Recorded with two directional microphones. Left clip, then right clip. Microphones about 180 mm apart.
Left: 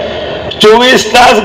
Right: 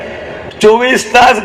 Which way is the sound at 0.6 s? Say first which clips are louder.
Left 4 dB; 20° right (ahead or behind).